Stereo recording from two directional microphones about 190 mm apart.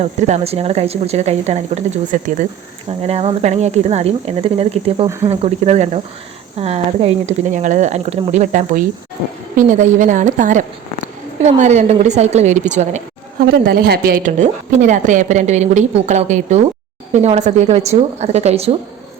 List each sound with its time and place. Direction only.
0.0 s speech: 35° right (ahead or behind)
13.5 s speech: 55° right (ahead or behind); by 18.8 s 30° right (ahead or behind)